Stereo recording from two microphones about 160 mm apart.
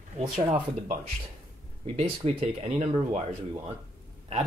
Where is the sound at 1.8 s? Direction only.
40° right (ahead or behind).